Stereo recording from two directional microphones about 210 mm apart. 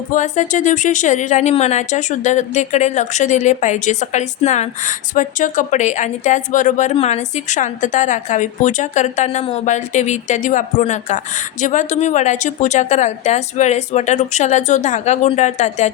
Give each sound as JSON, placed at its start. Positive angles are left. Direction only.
{"t": 0.1, "sound": "speech", "side_deg": 35}